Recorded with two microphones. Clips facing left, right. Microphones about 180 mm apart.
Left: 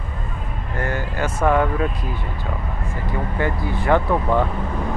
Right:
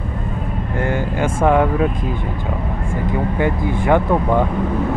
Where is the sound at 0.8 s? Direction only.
15° right (ahead or behind).